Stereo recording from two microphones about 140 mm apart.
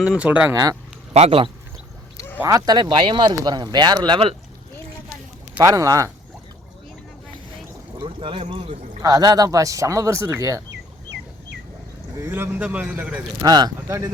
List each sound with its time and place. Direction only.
0.0 s speech: 10° right (ahead or behind)
0.5 s speech: 25° right (ahead or behind)
1.1 s speech: 45° right (ahead or behind)
2.1 s a sound: 15° left (ahead or behind)
2.4 s speech: 25° right (ahead or behind)
5.5 s speech: 25° right (ahead or behind)
7.9 s speech: 35° right (ahead or behind)
9.0 s speech: 25° right (ahead or behind)
12.2 s speech: 15° right (ahead or behind)
13.4 s speech: 30° right (ahead or behind)